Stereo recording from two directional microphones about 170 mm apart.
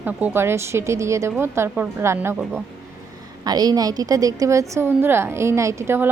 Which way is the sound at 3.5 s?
20° right (ahead or behind).